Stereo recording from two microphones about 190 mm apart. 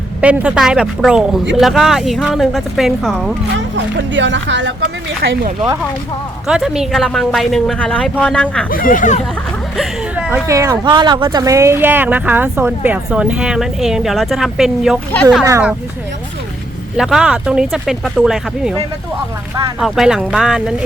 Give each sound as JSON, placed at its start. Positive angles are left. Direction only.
{"t": 0.2, "sound": "speech", "side_deg": -5}
{"t": 4.1, "sound": "speech", "side_deg": -70}
{"t": 5.2, "sound": "speech", "side_deg": -60}
{"t": 6.5, "sound": "speech", "side_deg": -5}
{"t": 8.7, "sound": "speech", "side_deg": 45}
{"t": 9.7, "sound": "speech", "side_deg": -5}
{"t": 15.4, "sound": "speech", "side_deg": -15}
{"t": 17.0, "sound": "speech", "side_deg": -5}
{"t": 19.8, "sound": "speech", "side_deg": 0}